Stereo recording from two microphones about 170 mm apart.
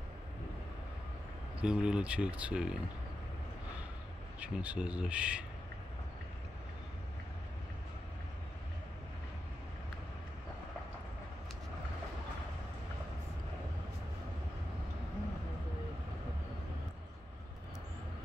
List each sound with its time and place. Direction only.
1.6 s speech: 5° right (ahead or behind)
4.4 s speech: 10° right (ahead or behind)